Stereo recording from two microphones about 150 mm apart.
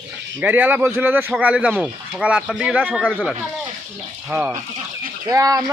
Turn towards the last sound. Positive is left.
turn(degrees=-20)  # may be behind; listen again after turning